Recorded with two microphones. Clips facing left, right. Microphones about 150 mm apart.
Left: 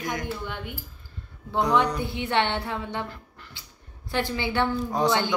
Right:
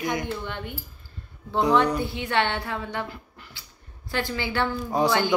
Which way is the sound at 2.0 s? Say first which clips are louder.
Even; 20° left (ahead or behind).